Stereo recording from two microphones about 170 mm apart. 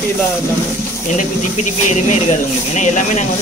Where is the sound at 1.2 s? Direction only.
45° left (ahead or behind).